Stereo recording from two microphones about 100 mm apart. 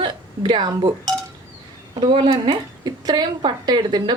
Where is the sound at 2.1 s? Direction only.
70° right (ahead or behind).